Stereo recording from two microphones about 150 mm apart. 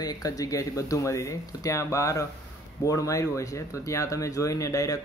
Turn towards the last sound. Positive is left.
turn(degrees=20)  # may be behind; listen again after turning